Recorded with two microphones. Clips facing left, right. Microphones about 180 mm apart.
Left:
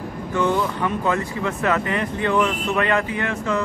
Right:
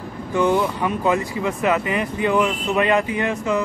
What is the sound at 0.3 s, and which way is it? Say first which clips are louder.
Speech: right 3 dB; 15° right (ahead or behind).